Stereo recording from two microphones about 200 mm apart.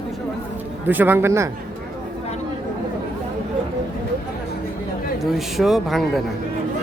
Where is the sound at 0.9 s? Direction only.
10° right (ahead or behind).